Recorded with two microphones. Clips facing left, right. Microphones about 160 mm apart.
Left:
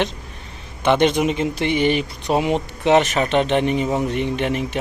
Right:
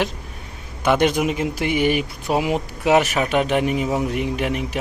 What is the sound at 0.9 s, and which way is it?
Speech, 5° right (ahead or behind).